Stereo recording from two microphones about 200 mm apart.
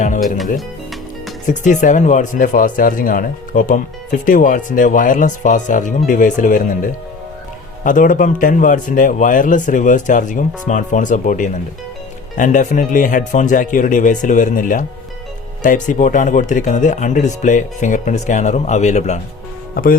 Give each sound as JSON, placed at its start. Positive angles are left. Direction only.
{"t": 1.5, "sound": "speech", "side_deg": 40}